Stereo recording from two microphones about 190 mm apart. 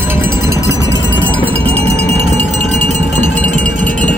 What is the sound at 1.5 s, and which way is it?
Music, 30° right (ahead or behind).